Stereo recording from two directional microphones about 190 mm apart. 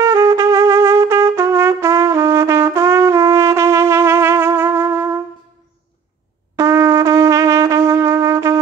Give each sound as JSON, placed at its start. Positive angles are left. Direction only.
{"t": 0.0, "sound": "trumpet", "side_deg": -15}
{"t": 6.5, "sound": "trumpet", "side_deg": -15}